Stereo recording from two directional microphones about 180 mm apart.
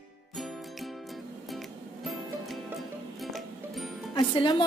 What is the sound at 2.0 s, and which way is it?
Music, centre (ahead or behind).